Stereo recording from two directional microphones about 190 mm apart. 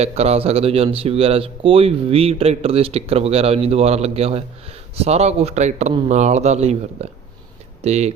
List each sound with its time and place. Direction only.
0.0 s speech: 35° right (ahead or behind)